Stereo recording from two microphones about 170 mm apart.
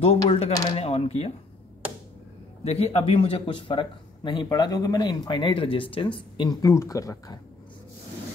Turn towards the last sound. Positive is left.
turn(degrees=20)  # may be behind; listen again after turning